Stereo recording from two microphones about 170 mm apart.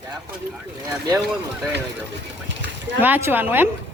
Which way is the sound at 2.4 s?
90° right.